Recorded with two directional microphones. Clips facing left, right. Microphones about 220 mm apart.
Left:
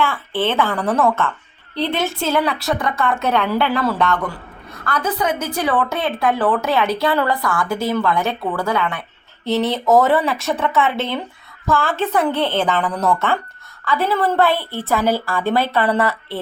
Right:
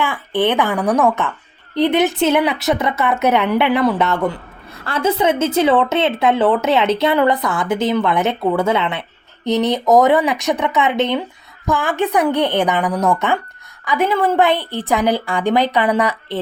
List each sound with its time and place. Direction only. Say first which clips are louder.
0.0 s a woman's voice: right 2 dB; 15° right (ahead or behind)